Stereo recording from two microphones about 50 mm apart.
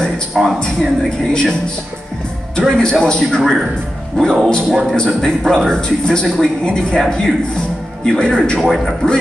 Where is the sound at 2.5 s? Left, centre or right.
Centre.